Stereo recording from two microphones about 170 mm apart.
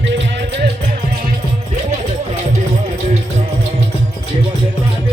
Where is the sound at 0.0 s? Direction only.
90° right.